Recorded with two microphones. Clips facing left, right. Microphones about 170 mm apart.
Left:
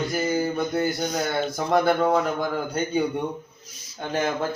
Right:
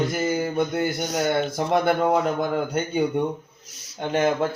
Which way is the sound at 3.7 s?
75° right (ahead or behind).